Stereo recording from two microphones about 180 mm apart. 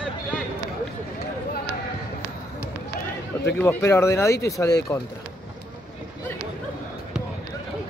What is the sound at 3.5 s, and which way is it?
Speech, 15° left (ahead or behind).